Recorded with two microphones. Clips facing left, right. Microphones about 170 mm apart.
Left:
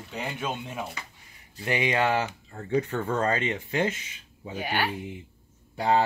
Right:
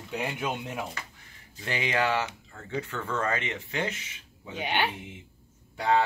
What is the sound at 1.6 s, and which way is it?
Speech, 20° left (ahead or behind).